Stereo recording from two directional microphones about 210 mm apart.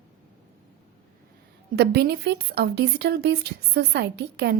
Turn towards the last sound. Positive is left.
turn(degrees=-50)  # may be behind; listen again after turning